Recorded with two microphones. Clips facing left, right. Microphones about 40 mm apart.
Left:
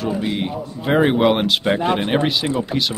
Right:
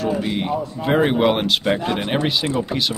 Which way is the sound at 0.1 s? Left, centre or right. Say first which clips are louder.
Right 1 dB; centre.